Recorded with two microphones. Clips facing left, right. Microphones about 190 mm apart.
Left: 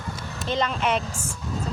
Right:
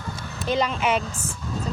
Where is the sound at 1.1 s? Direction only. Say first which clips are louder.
Even; 10° left (ahead or behind).